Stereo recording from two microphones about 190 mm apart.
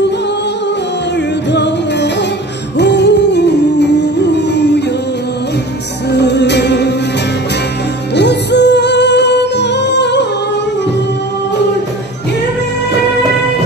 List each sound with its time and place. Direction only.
1.5 s music: 65° left (ahead or behind)
6.1 s music: 65° left (ahead or behind)
8.1 s music: 65° left (ahead or behind)